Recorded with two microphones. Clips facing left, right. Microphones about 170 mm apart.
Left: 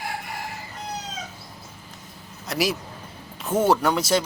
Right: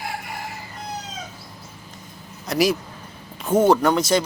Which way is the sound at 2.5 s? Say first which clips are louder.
Right 5 dB; centre (ahead or behind).